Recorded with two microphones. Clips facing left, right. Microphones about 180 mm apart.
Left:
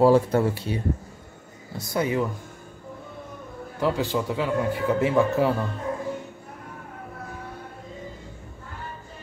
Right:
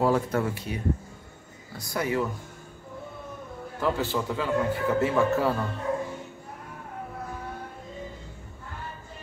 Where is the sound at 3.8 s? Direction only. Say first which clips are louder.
Left 3 dB; 15° left (ahead or behind).